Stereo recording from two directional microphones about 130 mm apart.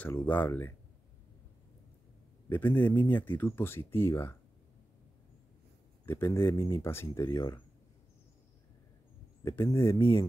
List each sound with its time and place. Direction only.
0.0 s speech: 15° left (ahead or behind)
2.5 s speech: 15° left (ahead or behind)
6.0 s speech: 20° left (ahead or behind)
9.4 s speech: 20° left (ahead or behind)